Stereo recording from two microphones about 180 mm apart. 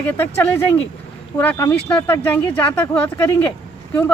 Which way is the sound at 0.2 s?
10° left (ahead or behind).